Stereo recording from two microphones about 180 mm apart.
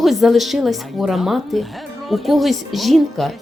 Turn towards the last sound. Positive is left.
turn(degrees=0)  # may be behind; listen again after turning